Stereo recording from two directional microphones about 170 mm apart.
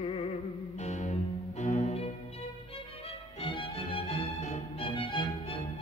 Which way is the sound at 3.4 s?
30° left (ahead or behind).